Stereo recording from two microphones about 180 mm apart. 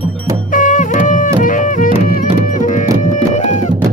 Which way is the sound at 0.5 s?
45° left (ahead or behind).